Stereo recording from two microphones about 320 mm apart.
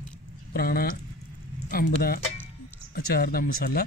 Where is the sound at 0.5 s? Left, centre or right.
Left.